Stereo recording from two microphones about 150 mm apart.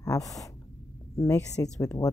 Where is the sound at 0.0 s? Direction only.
25° left (ahead or behind).